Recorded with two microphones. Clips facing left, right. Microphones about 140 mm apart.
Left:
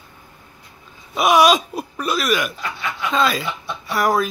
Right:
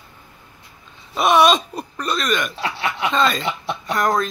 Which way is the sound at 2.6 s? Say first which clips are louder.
Right 3 dB; 70° right (ahead or behind).